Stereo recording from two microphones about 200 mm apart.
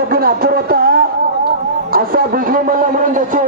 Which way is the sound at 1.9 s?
45° right (ahead or behind).